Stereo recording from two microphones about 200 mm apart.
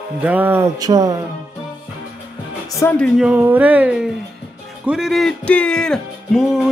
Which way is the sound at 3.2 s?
5° right (ahead or behind).